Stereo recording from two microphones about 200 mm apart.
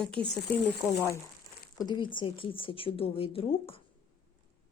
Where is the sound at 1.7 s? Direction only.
20° left (ahead or behind).